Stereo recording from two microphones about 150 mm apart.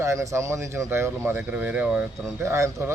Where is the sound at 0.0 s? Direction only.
20° right (ahead or behind).